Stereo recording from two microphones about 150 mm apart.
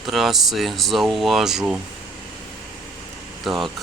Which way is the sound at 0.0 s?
Centre (ahead or behind).